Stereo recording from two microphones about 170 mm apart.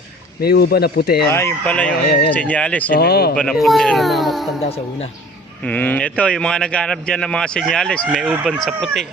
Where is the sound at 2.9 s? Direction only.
65° left (ahead or behind).